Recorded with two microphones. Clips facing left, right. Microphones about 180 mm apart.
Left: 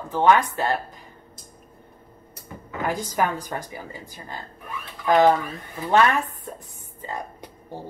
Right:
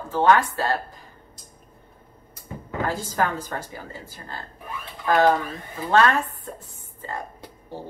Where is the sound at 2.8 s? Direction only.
15° left (ahead or behind).